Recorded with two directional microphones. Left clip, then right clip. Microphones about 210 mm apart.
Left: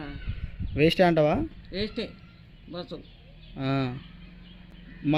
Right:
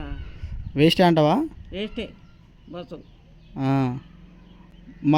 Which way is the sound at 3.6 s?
35° right (ahead or behind).